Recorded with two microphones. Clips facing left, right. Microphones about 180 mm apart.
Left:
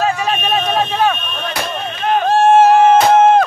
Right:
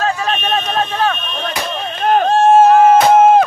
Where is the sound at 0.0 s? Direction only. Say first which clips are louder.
Left 1 dB; 10° left (ahead or behind).